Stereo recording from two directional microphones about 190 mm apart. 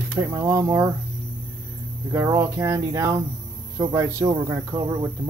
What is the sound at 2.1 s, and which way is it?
Speech, 15° right (ahead or behind).